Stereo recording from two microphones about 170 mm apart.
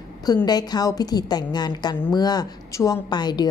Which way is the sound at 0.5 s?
25° left (ahead or behind).